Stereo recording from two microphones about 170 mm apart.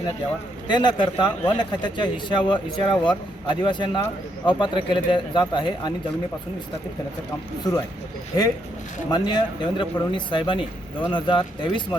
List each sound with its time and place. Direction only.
0.7 s a man's voice: 25° left (ahead or behind)
7.6 s a man's voice: 20° left (ahead or behind)
9.0 s a man's voice: 25° left (ahead or behind)